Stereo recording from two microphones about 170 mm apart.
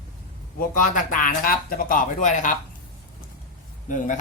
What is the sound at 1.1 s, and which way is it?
Speech, 55° left (ahead or behind).